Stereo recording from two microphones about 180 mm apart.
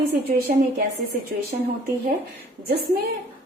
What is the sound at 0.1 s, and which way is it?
Speech, 65° right (ahead or behind).